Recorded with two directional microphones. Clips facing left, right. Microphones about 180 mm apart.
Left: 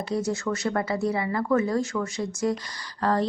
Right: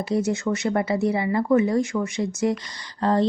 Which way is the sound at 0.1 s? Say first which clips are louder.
Right 4 dB; 20° right (ahead or behind).